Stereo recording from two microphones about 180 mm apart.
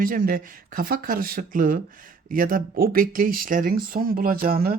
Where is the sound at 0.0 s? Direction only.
50° right (ahead or behind).